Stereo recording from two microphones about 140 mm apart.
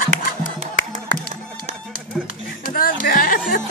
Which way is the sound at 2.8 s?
90° left.